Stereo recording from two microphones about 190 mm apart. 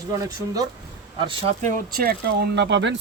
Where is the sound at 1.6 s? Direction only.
50° right (ahead or behind); by 2.9 s 70° right (ahead or behind).